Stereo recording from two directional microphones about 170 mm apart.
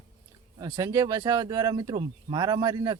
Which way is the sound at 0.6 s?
20° right (ahead or behind).